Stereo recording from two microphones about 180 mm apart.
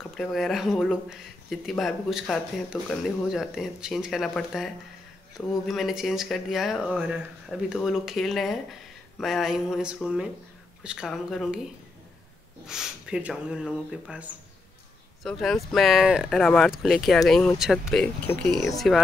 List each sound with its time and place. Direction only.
0.1 s speech: centre (ahead or behind)
12.6 s speech: 5° right (ahead or behind)